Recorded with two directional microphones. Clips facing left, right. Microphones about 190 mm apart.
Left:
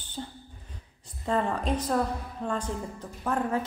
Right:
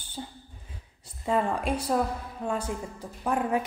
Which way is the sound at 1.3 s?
10° right (ahead or behind).